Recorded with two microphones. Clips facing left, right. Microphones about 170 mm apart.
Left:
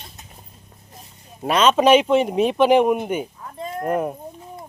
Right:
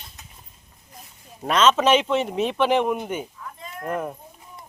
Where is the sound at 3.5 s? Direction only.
35° left (ahead or behind).